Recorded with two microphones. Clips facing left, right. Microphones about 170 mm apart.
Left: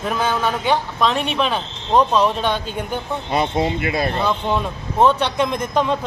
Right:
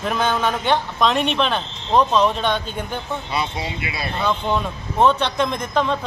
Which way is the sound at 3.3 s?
45° left (ahead or behind).